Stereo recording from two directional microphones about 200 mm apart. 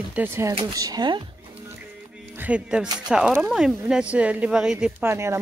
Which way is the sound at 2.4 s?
5° right (ahead or behind).